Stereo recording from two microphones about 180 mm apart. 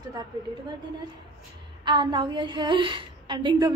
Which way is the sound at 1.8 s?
25° right (ahead or behind).